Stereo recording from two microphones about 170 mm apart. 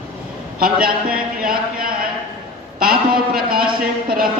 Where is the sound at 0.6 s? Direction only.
60° right (ahead or behind).